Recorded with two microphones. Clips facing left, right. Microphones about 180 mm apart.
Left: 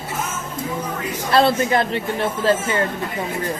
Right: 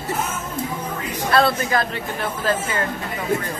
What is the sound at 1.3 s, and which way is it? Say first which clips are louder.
Speech: left 3 dB; 25° left (ahead or behind).